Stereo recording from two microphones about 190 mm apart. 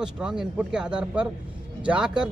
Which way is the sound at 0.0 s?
5° right (ahead or behind).